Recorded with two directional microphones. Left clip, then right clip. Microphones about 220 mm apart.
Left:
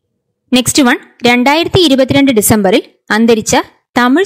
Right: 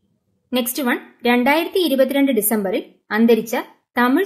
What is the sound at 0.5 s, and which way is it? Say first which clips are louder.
A woman's voice: left 11 dB; 45° left (ahead or behind).